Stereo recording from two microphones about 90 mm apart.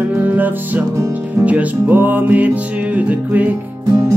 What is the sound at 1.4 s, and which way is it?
Music, 15° right (ahead or behind).